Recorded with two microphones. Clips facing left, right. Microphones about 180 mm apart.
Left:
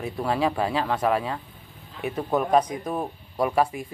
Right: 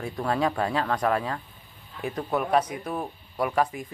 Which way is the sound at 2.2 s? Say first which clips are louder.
Left 3 dB; 15° left (ahead or behind).